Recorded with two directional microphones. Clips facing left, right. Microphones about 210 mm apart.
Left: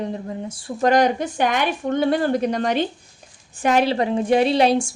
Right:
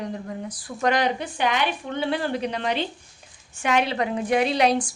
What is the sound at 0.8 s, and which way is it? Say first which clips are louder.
A woman's voice: left 5 dB; 45° left (ahead or behind).